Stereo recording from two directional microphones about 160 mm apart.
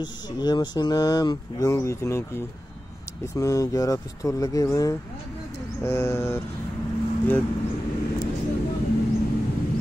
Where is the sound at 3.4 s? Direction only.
20° left (ahead or behind).